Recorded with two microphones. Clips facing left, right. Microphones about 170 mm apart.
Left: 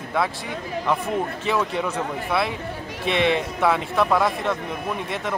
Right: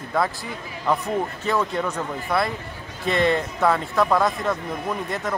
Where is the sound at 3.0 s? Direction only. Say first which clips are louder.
Even; 80° left.